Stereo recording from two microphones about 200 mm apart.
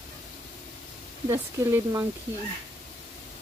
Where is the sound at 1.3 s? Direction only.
15° right (ahead or behind).